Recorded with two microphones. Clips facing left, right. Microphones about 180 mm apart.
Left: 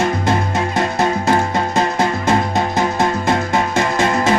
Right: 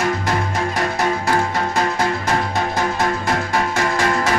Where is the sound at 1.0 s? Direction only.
25° left (ahead or behind).